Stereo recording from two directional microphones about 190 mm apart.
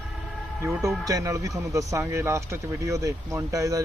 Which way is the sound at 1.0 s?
20° right (ahead or behind).